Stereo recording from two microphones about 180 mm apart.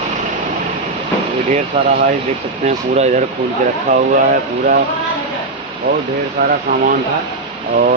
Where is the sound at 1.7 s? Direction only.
30° right (ahead or behind).